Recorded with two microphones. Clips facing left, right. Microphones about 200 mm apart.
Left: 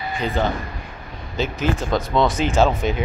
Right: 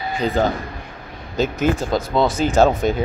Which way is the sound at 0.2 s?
40° right (ahead or behind).